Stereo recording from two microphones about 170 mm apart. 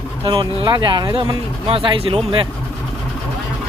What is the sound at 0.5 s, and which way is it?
Speech, 25° right (ahead or behind).